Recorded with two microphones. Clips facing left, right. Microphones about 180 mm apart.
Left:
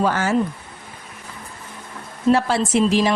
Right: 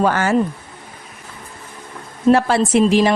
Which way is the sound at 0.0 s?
60° right (ahead or behind).